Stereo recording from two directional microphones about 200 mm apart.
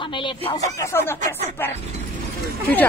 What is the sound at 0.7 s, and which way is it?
Speech, 15° left (ahead or behind).